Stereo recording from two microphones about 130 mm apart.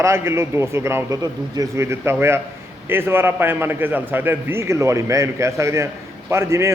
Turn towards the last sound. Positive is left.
turn(degrees=-20)  # may be behind; listen again after turning